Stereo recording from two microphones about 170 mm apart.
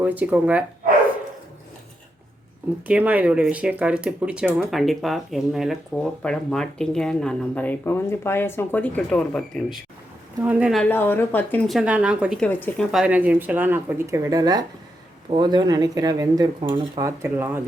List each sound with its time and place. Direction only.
0.0 s speech: 10° right (ahead or behind)
2.8 s speech: 10° right (ahead or behind)
10.8 s speech: 10° left (ahead or behind)
11.7 s speech: 5° right (ahead or behind)
12.4 s speech: 10° left (ahead or behind)
12.9 s speech: 5° right (ahead or behind); by 17.0 s 30° right (ahead or behind)
17.0 s speech: 15° right (ahead or behind)